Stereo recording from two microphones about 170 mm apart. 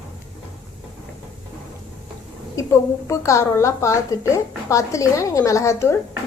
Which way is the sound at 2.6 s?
15° left (ahead or behind).